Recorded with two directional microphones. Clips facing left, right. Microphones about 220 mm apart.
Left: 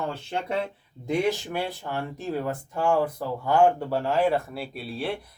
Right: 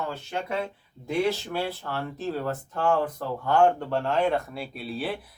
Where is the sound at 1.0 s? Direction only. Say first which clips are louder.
Left 1 dB; 15° left (ahead or behind).